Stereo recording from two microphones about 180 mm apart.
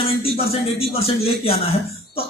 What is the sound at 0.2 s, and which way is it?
Speech, 35° left (ahead or behind).